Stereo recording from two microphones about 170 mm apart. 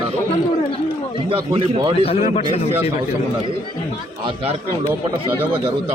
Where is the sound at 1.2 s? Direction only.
35° right (ahead or behind).